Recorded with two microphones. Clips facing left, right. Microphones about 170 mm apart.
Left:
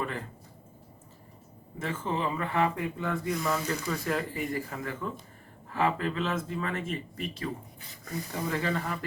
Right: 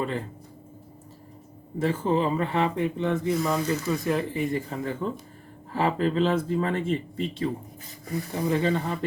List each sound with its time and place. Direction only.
0.0 s speech: 25° right (ahead or behind)
1.8 s speech: 35° right (ahead or behind)